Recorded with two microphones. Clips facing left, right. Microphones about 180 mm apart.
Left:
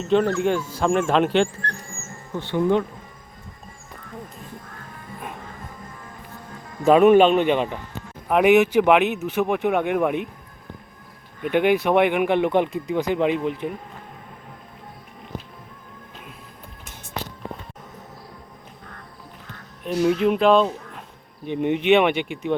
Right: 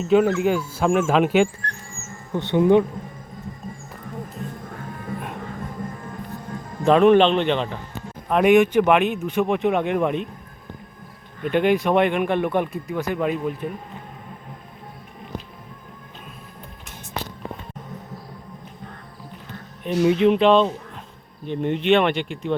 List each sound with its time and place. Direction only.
0.0 s speech: 5° right (ahead or behind)
2.3 s speech: 20° right (ahead or behind)
6.8 s speech: 5° left (ahead or behind)
11.4 s speech: 10° left (ahead or behind)
19.8 s speech: centre (ahead or behind)